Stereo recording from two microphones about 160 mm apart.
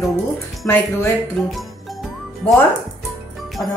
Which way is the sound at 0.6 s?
15° left (ahead or behind).